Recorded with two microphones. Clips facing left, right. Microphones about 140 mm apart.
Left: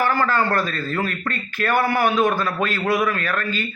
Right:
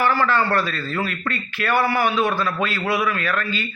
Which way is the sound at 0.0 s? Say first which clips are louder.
Even; 45° left (ahead or behind).